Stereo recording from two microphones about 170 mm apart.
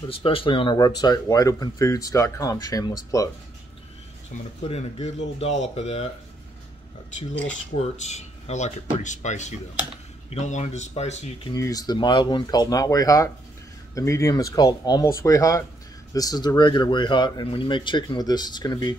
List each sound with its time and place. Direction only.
0.1 s speech: 35° left (ahead or behind)
4.6 s speech: 40° left (ahead or behind)
7.7 s speech: 40° left (ahead or behind)
11.5 s speech: 20° left (ahead or behind)